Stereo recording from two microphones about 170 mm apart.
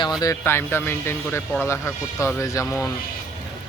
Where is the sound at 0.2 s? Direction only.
15° left (ahead or behind).